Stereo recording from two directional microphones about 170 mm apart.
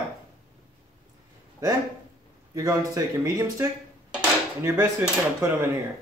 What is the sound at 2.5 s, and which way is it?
Speech, 20° right (ahead or behind).